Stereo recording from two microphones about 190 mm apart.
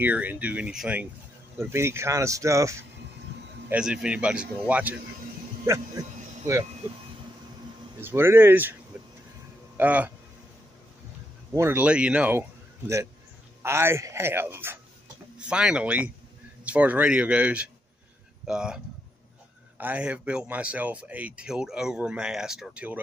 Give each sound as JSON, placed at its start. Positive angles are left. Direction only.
{"t": 0.0, "sound": "speech", "side_deg": -10}
{"t": 8.0, "sound": "speech", "side_deg": -10}
{"t": 9.8, "sound": "a man's voice", "side_deg": -10}
{"t": 11.5, "sound": "a man's voice", "side_deg": -10}
{"t": 19.8, "sound": "speech", "side_deg": -10}